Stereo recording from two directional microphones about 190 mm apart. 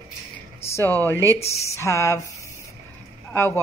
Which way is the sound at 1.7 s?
15° left (ahead or behind).